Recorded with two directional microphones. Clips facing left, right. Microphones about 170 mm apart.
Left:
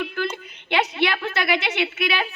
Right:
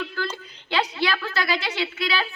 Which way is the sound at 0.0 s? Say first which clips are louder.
Left 3 dB; 20° left (ahead or behind).